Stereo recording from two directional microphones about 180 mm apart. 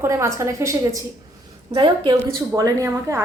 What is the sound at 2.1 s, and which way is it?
Speech, 20° right (ahead or behind).